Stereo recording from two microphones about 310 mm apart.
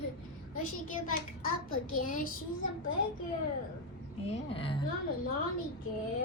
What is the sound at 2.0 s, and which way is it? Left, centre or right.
Child singing, left.